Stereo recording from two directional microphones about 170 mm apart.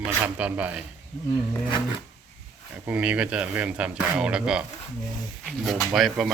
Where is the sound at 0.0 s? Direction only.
10° right (ahead or behind).